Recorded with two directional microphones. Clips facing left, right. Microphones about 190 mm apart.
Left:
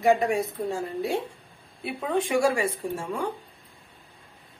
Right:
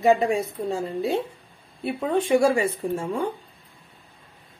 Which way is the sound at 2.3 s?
25° right (ahead or behind).